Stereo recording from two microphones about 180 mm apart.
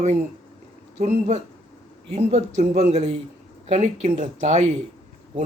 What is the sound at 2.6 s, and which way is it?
Speech, 40° right (ahead or behind).